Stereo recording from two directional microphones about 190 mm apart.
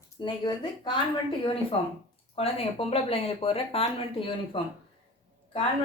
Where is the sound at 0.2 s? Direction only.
25° left (ahead or behind).